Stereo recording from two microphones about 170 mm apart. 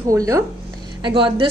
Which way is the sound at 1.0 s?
30° right (ahead or behind).